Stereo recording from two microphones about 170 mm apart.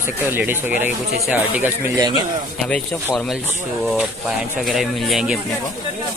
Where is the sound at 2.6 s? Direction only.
5° left (ahead or behind).